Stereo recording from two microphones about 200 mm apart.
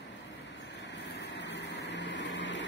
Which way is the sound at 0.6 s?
60° left (ahead or behind).